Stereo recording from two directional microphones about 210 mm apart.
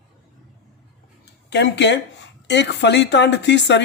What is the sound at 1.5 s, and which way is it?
Speech, 55° left (ahead or behind).